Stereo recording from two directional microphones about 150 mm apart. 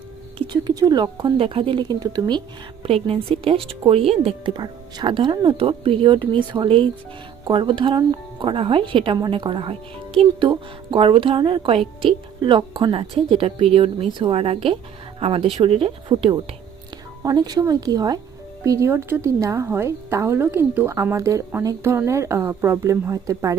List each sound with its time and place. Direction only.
0.3 s a woman's voice: 30° right (ahead or behind)
2.8 s a woman's voice: 40° right (ahead or behind); by 23.6 s 25° right (ahead or behind)